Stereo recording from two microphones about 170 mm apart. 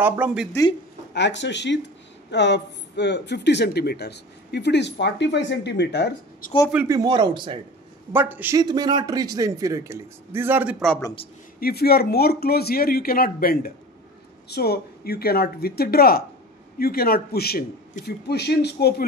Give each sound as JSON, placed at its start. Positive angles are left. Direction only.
{"t": 0.0, "sound": "speech", "side_deg": -10}
{"t": 1.1, "sound": "speech", "side_deg": 90}
{"t": 6.7, "sound": "speech", "side_deg": -10}
{"t": 7.0, "sound": "a man's voice", "side_deg": -25}
{"t": 8.1, "sound": "speech", "side_deg": -10}
{"t": 8.5, "sound": "a man's voice", "side_deg": -25}
{"t": 11.6, "sound": "speech", "side_deg": 65}